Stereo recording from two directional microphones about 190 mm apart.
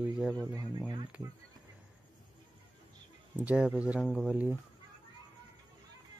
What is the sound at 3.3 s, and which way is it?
Speech, 5° right (ahead or behind).